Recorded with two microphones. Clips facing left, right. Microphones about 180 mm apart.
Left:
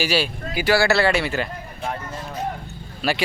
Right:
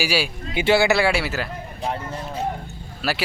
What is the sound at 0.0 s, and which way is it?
Speech, 10° right (ahead or behind).